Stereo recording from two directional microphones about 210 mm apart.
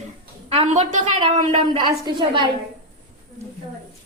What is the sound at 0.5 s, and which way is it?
A woman's voice, 30° right (ahead or behind).